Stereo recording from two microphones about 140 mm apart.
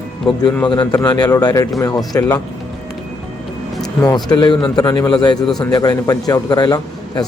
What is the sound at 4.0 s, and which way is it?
A man's voice, 30° left (ahead or behind).